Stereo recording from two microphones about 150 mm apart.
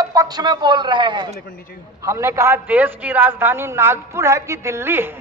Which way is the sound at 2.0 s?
20° right (ahead or behind).